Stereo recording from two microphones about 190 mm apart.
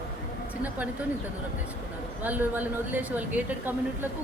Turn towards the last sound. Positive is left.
turn(degrees=-10)  # may be behind; listen again after turning